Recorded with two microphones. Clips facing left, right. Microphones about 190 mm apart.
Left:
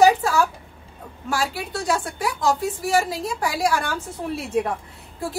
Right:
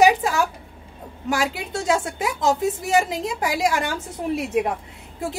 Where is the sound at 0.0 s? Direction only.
15° right (ahead or behind).